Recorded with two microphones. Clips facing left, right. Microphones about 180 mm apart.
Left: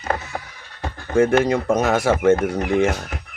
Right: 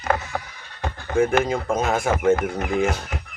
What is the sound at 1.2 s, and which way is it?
Speech, 75° left (ahead or behind).